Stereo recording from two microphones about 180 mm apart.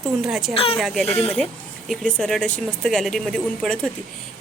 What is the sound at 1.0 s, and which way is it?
Speech, 35° left (ahead or behind).